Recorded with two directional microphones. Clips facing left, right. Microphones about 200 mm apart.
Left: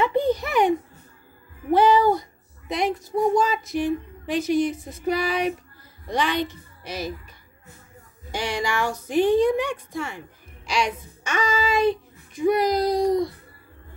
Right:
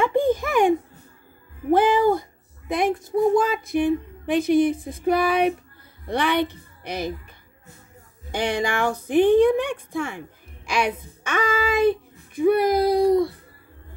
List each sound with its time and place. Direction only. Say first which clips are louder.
0.0 s a sound: right 1 dB; 50° right (ahead or behind)
1.7 s music: even; 50° right (ahead or behind)
2.7 s a woman's voice: right 2 dB; 50° right (ahead or behind)
8.3 s a woman's voice: right 3 dB; 55° right (ahead or behind)